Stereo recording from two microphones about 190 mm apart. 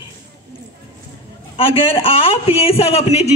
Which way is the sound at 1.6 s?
30° left (ahead or behind).